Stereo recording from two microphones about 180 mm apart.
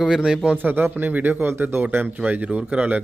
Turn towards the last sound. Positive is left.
turn(degrees=-5)  # may be behind; listen again after turning